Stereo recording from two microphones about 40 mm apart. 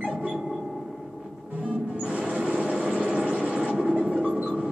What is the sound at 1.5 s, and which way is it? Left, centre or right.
Music, right.